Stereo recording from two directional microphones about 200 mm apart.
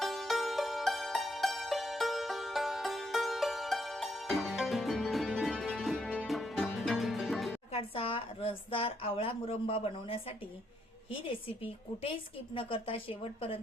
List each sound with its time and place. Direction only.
0.0 s music: centre (ahead or behind)
7.7 s a woman's voice: 25° left (ahead or behind)